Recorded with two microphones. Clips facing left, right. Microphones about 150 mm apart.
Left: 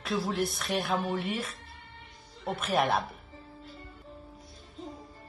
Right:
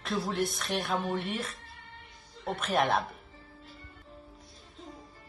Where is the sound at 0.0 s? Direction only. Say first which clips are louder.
Left 1 dB; centre (ahead or behind).